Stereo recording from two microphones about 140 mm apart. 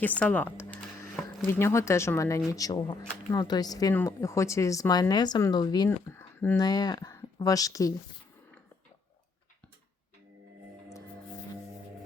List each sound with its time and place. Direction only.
0.0 s speech: 10° left (ahead or behind); by 6.1 s 25° left (ahead or behind)
6.1 s a sound: 15° left (ahead or behind)
6.6 s speech: 30° left (ahead or behind)